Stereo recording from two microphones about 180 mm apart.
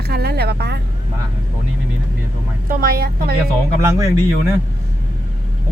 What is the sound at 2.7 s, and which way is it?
Speech, 55° right (ahead or behind).